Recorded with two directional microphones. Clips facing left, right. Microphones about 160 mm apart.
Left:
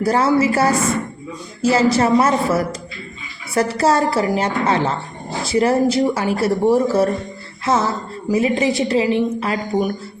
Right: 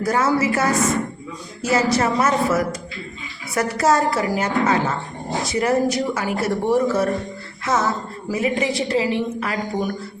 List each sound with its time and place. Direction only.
0.0 s a woman's voice: 30° left (ahead or behind)
7.6 s music: 30° left (ahead or behind)
8.3 s speech: 25° left (ahead or behind)